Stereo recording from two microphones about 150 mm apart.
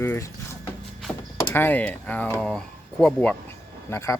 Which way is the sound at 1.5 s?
10° left (ahead or behind).